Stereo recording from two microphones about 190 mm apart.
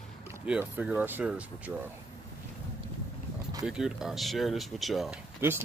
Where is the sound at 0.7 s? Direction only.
10° right (ahead or behind).